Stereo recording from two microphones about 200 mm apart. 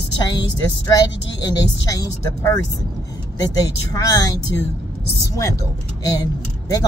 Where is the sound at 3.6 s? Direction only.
15° left (ahead or behind).